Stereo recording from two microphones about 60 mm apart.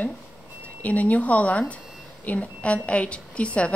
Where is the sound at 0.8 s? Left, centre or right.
Left.